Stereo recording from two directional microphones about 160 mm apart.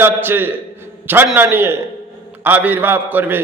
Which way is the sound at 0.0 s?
15° right (ahead or behind).